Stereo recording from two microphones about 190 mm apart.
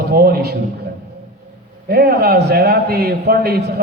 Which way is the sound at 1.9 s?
55° right (ahead or behind).